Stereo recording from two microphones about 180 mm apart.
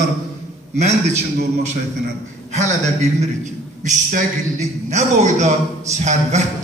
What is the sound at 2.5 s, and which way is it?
A man's voice, 40° right (ahead or behind).